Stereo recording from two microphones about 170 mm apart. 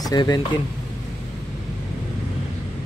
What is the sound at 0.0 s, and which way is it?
Speech, 25° left (ahead or behind).